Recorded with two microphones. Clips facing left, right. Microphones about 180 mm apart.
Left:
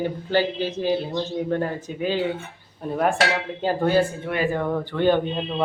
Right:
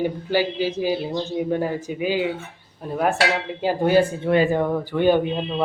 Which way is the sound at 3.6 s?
10° right (ahead or behind).